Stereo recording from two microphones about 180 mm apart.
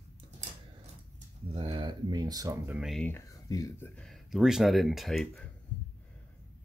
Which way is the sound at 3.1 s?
15° left (ahead or behind).